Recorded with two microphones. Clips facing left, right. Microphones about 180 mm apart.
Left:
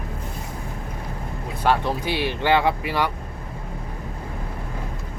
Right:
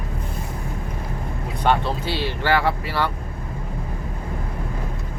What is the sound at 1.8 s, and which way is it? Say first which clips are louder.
Speech: left 1 dB; 15° left (ahead or behind).